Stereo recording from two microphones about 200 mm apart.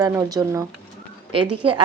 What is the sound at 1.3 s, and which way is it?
Speech, 25° right (ahead or behind).